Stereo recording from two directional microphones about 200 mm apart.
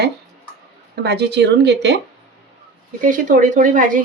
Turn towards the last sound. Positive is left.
turn(degrees=-40)  # may be behind; listen again after turning